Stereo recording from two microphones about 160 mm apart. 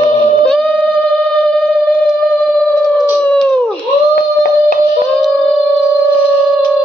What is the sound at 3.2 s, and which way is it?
Howl, 10° left (ahead or behind).